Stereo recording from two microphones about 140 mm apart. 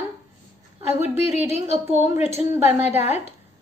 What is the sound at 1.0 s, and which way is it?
Speech, 50° left (ahead or behind).